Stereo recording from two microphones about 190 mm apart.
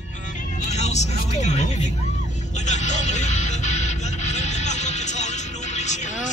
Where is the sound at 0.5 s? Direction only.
35° left (ahead or behind).